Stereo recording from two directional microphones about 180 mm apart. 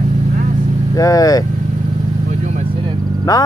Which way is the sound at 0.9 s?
20° left (ahead or behind).